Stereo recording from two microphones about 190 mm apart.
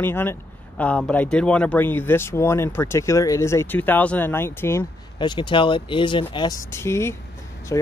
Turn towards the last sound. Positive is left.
turn(degrees=15)  # may be behind; listen again after turning